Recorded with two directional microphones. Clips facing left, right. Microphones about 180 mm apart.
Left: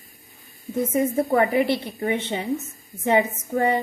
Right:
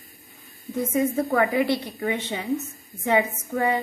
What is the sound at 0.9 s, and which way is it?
A woman's voice, 20° left (ahead or behind).